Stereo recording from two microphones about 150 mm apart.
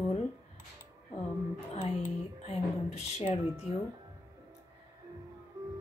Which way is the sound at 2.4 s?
45° left (ahead or behind).